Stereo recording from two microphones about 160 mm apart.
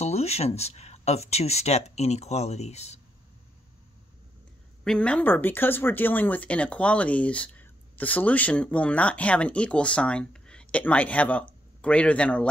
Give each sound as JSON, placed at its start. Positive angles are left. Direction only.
{"t": 0.0, "sound": "speech", "side_deg": 40}
{"t": 4.8, "sound": "speech", "side_deg": 5}